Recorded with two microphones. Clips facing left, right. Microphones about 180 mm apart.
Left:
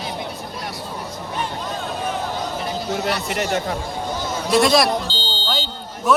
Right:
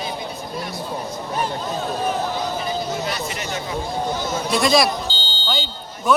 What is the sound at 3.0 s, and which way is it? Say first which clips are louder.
Speech: left 4 dB; 60° left (ahead or behind).